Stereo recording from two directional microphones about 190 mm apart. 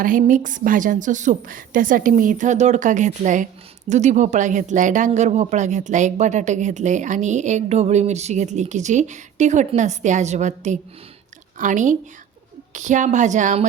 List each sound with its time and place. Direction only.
0.0 s a woman's voice: 45° right (ahead or behind)